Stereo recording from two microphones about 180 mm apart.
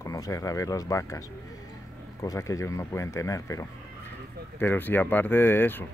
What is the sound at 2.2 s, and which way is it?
Speech, 15° left (ahead or behind).